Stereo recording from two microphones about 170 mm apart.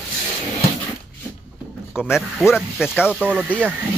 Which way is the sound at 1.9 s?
Centre (ahead or behind).